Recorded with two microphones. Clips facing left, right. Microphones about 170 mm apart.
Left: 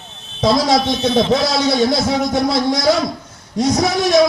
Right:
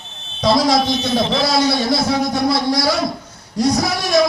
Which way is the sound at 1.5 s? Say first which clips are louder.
Left 1 dB; 20° left (ahead or behind).